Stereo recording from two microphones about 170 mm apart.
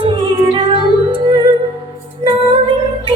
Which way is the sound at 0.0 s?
30° right (ahead or behind).